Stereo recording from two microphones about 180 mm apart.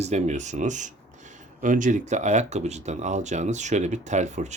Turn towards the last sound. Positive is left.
turn(degrees=-40)  # may be behind; listen again after turning